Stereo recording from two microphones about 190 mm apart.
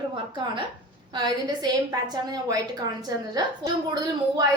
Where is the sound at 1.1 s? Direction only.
25° right (ahead or behind).